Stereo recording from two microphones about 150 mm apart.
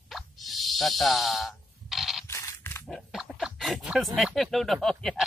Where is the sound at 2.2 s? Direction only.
20° left (ahead or behind).